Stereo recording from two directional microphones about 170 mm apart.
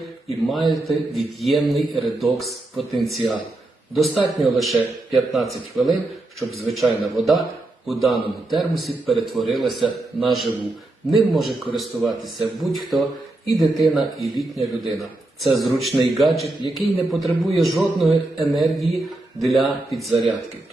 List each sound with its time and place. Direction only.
0.4 s a man's voice: centre (ahead or behind)